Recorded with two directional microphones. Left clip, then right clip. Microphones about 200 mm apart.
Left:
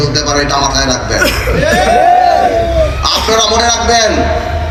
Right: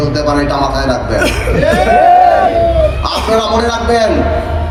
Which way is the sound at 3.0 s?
60° right (ahead or behind).